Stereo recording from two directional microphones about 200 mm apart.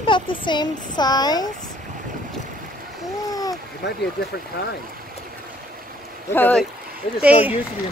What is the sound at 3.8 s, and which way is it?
Speech, 55° left (ahead or behind).